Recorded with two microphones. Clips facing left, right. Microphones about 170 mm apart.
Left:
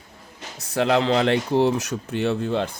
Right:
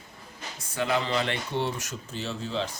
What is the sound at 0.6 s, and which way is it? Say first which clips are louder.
Speech: left 8 dB; 80° left.